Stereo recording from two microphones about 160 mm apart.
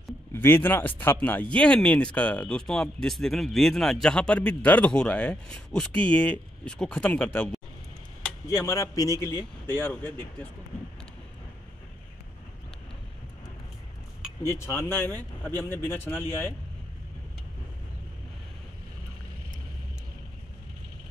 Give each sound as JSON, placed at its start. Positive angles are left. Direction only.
{"t": 0.3, "sound": "speech", "side_deg": 15}
{"t": 8.5, "sound": "speech", "side_deg": 20}
{"t": 14.7, "sound": "speech", "side_deg": 15}